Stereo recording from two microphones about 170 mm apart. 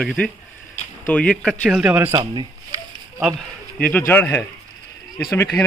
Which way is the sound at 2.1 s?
25° right (ahead or behind).